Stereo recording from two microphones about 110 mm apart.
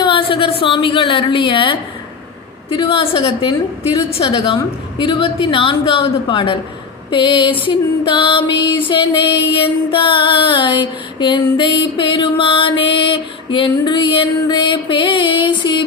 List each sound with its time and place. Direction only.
0.0 s music: 50° left (ahead or behind)
2.6 s a woman's voice: 55° left (ahead or behind)
4.1 s music: 50° left (ahead or behind)